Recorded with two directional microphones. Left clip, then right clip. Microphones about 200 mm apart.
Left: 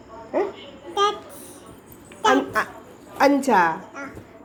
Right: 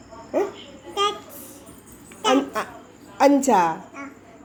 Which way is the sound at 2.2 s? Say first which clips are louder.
Left 2 dB; 15° right (ahead or behind).